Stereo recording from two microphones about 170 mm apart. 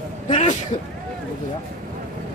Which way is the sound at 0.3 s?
45° left (ahead or behind).